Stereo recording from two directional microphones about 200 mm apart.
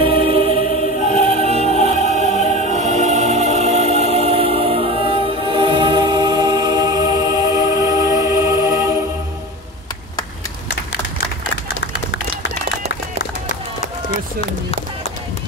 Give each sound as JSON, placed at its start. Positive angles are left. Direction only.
{"t": 0.0, "sound": "choir", "side_deg": -25}
{"t": 0.6, "sound": "choir", "side_deg": 40}
{"t": 1.4, "sound": "music", "side_deg": -30}